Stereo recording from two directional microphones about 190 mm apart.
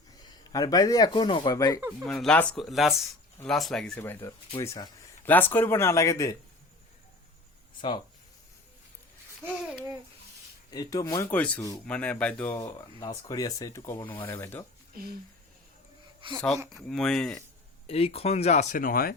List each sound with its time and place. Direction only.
0.2 s speech: 20° left (ahead or behind)
2.0 s speech: 5° left (ahead or behind)
7.8 s speech: 25° left (ahead or behind)
9.4 s speech: 5° right (ahead or behind)
10.7 s speech: 20° left (ahead or behind)
16.2 s speech: 25° right (ahead or behind)
16.8 s speech: 5° left (ahead or behind)
17.8 s speech: 30° left (ahead or behind); by 19.1 s 50° left (ahead or behind)